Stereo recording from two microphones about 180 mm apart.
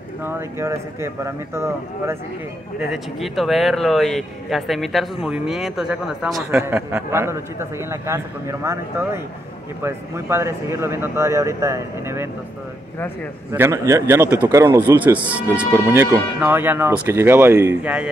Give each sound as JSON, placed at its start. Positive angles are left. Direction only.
{"t": 0.2, "sound": "a man's voice", "side_deg": -15}
{"t": 2.8, "sound": "a man's voice", "side_deg": 0}
{"t": 13.5, "sound": "a man's voice", "side_deg": -15}